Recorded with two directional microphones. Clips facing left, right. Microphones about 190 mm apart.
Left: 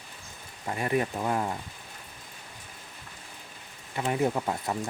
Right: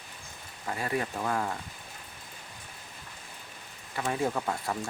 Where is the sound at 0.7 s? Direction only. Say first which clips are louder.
Left 4 dB; 20° left (ahead or behind).